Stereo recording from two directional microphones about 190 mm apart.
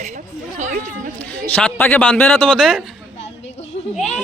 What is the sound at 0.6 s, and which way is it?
Speech, 40° right (ahead or behind).